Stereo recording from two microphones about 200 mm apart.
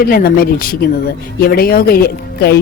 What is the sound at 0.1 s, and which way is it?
Speech, 50° left (ahead or behind).